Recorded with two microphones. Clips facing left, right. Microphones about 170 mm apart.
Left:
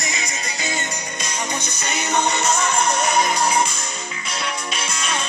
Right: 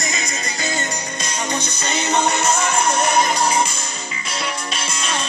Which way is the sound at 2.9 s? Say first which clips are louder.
Right 2 dB; centre (ahead or behind).